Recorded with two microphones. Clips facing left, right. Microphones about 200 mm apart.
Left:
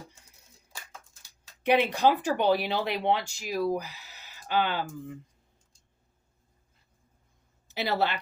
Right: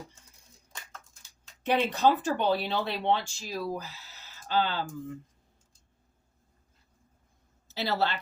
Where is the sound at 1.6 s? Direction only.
10° left (ahead or behind).